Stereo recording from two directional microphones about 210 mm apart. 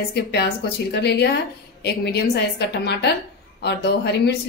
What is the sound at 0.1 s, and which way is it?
A woman's voice, 50° left (ahead or behind).